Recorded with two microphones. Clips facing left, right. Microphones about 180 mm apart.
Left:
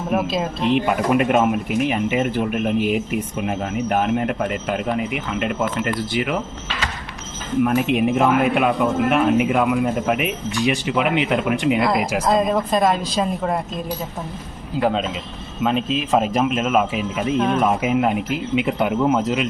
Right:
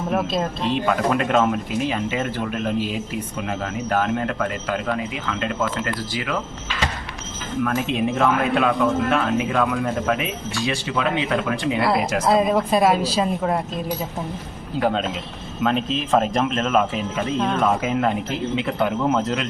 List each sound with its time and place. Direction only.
0.1 s speech: 5° left (ahead or behind)
0.7 s speech: 15° left (ahead or behind)
7.6 s speech: 15° left (ahead or behind)
11.8 s speech: 5° right (ahead or behind)
14.8 s speech: centre (ahead or behind)